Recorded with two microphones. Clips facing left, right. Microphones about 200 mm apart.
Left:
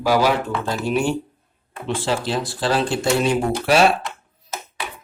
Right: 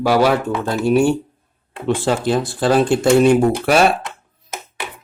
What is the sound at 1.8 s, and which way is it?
Speech, 55° right (ahead or behind).